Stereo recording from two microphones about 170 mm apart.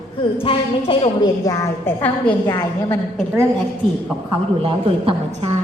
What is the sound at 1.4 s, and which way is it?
A woman's voice, 15° left (ahead or behind).